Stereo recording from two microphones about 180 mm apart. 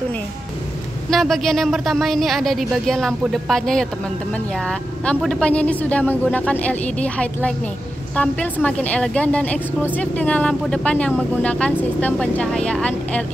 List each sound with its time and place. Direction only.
1.1 s speech: centre (ahead or behind)
5.0 s speech: 5° left (ahead or behind)